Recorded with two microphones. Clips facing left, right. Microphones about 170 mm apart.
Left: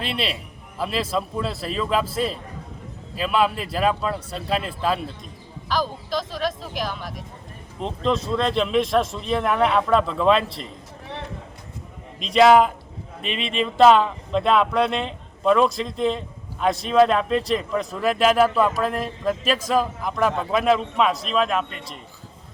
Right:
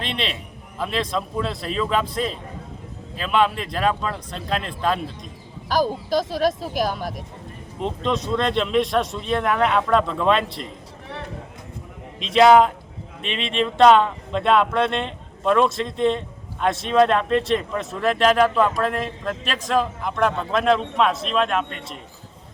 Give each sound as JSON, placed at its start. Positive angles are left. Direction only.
{"t": 0.0, "sound": "a man's voice", "side_deg": 5}
{"t": 5.6, "sound": "speech", "side_deg": -45}
{"t": 7.8, "sound": "speech", "side_deg": 0}
{"t": 12.2, "sound": "speech", "side_deg": 0}